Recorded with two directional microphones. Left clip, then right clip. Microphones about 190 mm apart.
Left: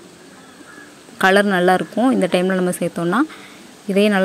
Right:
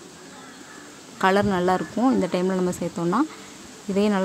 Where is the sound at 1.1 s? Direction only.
15° left (ahead or behind).